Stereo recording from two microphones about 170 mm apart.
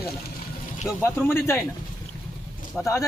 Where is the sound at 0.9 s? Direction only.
15° left (ahead or behind).